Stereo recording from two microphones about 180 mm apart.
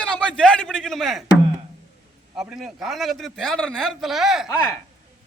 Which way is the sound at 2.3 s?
5° right (ahead or behind).